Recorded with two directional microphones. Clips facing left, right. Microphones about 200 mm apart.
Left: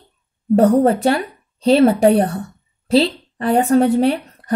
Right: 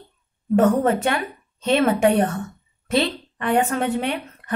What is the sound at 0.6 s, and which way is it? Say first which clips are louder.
Speech: left 4 dB; 35° left (ahead or behind).